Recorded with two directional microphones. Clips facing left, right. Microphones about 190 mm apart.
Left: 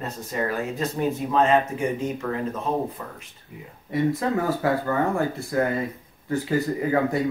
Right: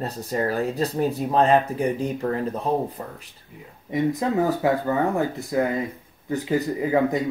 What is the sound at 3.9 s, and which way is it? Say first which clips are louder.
Speech: even; 15° right (ahead or behind).